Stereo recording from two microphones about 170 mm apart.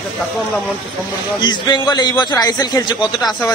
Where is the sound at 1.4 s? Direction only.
25° left (ahead or behind).